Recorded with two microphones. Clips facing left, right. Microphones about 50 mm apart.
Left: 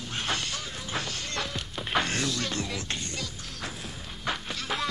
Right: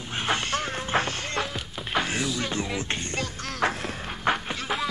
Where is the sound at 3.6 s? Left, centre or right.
Right.